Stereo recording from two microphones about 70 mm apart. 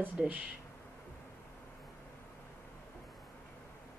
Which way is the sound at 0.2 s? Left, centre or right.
Centre.